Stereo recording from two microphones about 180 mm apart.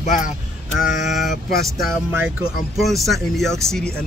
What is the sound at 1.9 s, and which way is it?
Speech, 10° right (ahead or behind).